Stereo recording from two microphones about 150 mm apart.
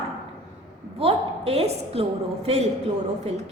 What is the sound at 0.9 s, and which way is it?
A woman's voice, 40° right (ahead or behind).